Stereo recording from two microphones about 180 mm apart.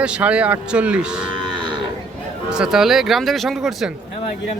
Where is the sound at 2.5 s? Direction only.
5° right (ahead or behind).